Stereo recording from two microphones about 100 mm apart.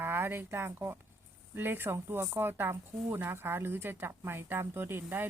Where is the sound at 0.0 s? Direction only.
25° right (ahead or behind).